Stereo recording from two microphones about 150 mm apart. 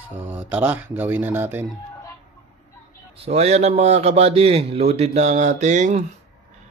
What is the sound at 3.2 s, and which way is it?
A man's voice, 45° right (ahead or behind).